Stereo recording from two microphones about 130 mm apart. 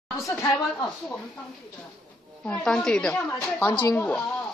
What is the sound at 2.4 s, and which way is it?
Speech, 5° left (ahead or behind).